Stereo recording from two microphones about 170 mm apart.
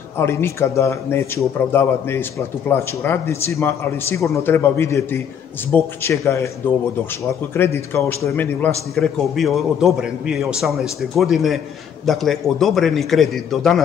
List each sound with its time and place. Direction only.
0.2 s a man's voice: 15° left (ahead or behind)
7.5 s a man's voice: 15° left (ahead or behind)
8.9 s a man's voice: centre (ahead or behind)